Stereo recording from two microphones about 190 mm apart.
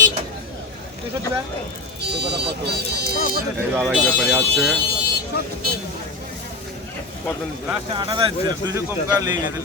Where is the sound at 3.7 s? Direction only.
5° right (ahead or behind).